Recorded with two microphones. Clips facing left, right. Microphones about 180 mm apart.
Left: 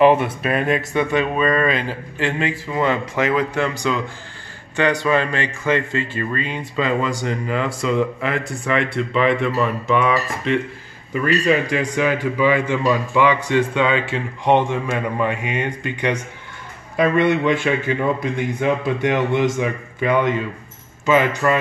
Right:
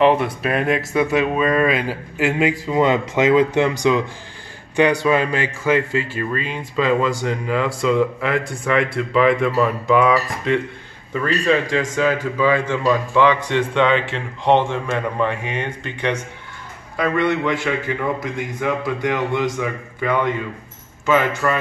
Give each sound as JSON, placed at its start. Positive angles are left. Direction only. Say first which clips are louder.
{"t": 0.0, "sound": "speech", "louder": "left 1 dB", "side_deg": 0}
{"t": 4.7, "sound": "a man's voice", "louder": "right 2 dB", "side_deg": -10}
{"t": 11.1, "sound": "a man's voice", "louder": "left 1 dB", "side_deg": 15}